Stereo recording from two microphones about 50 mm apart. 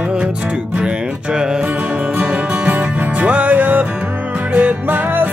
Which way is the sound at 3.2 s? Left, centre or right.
Right.